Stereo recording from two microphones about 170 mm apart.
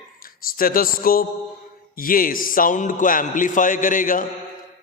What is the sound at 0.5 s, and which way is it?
A man's voice, 55° left (ahead or behind).